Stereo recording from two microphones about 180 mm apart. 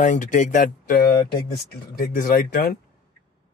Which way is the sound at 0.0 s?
45° left (ahead or behind).